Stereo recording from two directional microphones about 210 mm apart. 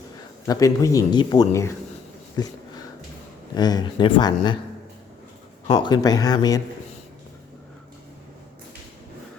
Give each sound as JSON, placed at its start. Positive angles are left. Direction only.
{"t": 0.4, "sound": "speech", "side_deg": 15}
{"t": 5.6, "sound": "speech", "side_deg": 20}